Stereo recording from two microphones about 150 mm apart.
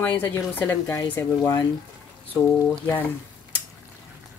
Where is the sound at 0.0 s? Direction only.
10° left (ahead or behind).